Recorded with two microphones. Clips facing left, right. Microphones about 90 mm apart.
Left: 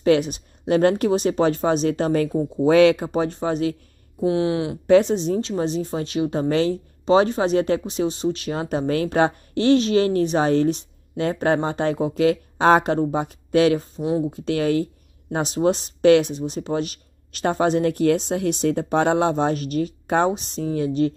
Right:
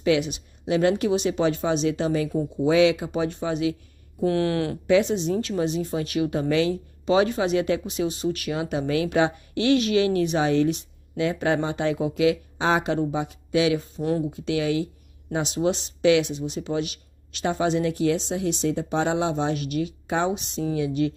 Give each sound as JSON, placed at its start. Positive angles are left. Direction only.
{"t": 0.0, "sound": "speech", "side_deg": 45}
{"t": 4.2, "sound": "speech", "side_deg": 20}
{"t": 4.8, "sound": "speech", "side_deg": 40}
{"t": 8.5, "sound": "speech", "side_deg": 40}